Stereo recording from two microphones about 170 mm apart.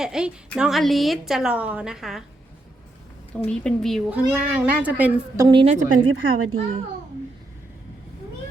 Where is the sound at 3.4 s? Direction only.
5° left (ahead or behind).